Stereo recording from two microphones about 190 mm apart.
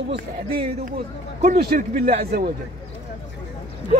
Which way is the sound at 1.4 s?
45° right (ahead or behind).